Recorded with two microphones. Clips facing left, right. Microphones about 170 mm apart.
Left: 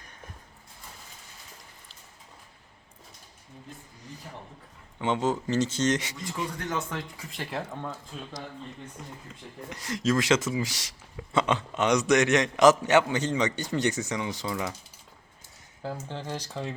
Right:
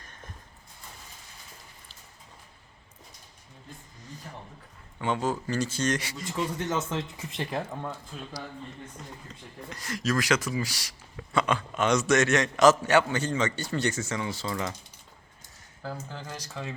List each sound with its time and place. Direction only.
0.0 s a sound: 10° left (ahead or behind)
4.9 s speech: 20° left (ahead or behind)
6.2 s speech: 20° right (ahead or behind)
7.7 s speech: 5° right (ahead or behind)
9.0 s speech: 15° left (ahead or behind)
14.4 s speech: 5° left (ahead or behind)
15.8 s speech: 25° left (ahead or behind)